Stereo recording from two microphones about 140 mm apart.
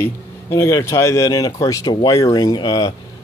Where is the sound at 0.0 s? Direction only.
20° left (ahead or behind).